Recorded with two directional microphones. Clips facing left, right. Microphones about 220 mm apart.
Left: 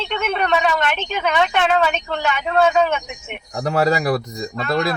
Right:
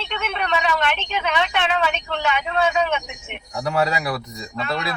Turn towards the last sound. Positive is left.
turn(degrees=45)  # may be behind; listen again after turning